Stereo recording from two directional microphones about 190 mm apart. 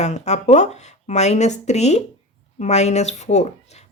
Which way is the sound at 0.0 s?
35° left (ahead or behind).